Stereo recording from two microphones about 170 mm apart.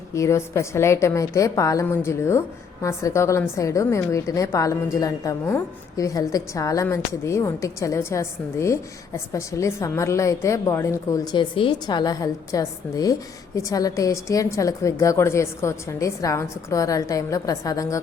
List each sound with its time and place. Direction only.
0.1 s a woman's voice: 15° left (ahead or behind)